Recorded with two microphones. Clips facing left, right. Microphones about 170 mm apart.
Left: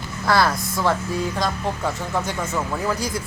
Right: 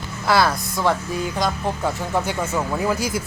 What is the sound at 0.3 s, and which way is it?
Speech, centre (ahead or behind).